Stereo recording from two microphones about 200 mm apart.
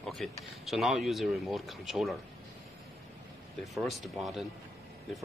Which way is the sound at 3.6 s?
Centre (ahead or behind).